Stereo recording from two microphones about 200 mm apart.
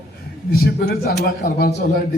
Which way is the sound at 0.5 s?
50° left (ahead or behind).